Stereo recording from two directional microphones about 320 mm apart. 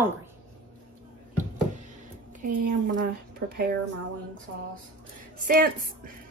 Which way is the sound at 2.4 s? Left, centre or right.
Right.